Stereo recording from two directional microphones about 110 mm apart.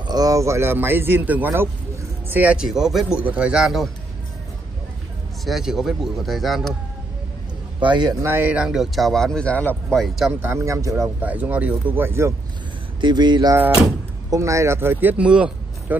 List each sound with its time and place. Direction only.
0.0 s a man's voice: 35° right (ahead or behind); by 3.9 s centre (ahead or behind)
5.4 s speech: centre (ahead or behind)
7.8 s speech: 40° right (ahead or behind)
8.2 s speech: 20° right (ahead or behind); by 9.9 s 15° left (ahead or behind)
9.9 s speech: centre (ahead or behind)
10.4 s speech: 25° right (ahead or behind)
11.2 s a man's voice: 15° right (ahead or behind)
13.0 s speech: 40° right (ahead or behind)
14.3 s speech: 30° right (ahead or behind); by 16.0 s 10° right (ahead or behind)